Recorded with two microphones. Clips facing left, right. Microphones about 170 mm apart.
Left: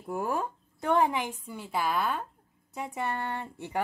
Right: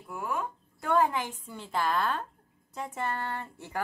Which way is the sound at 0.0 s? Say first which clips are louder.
Left 3 dB; 40° left (ahead or behind).